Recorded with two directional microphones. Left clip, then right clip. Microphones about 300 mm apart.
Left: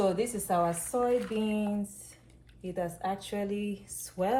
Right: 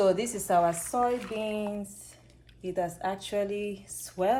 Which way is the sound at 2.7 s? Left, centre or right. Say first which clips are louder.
Right 2 dB; right.